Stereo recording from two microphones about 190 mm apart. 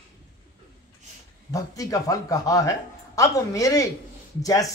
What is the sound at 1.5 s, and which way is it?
A man's voice, 15° left (ahead or behind).